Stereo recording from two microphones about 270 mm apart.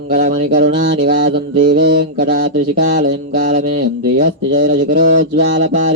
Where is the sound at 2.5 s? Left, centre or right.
Right.